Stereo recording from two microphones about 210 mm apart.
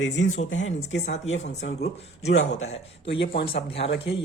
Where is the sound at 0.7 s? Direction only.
35° left (ahead or behind).